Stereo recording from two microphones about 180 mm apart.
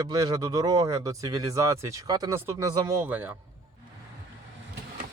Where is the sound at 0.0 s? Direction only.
20° right (ahead or behind).